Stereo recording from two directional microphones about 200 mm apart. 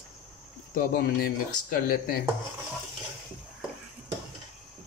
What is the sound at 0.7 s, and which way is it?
Speech, 45° left (ahead or behind).